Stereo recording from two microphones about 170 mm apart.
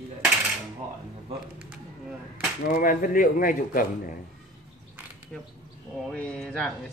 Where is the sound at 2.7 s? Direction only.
55° left (ahead or behind).